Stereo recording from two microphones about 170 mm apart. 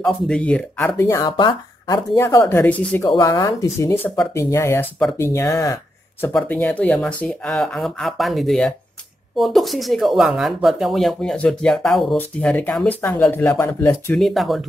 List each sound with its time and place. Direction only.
0.0 s speech: 5° left (ahead or behind)
3.1 s speech: 25° left (ahead or behind)
6.3 s speech: 5° left (ahead or behind)
14.1 s speech: centre (ahead or behind)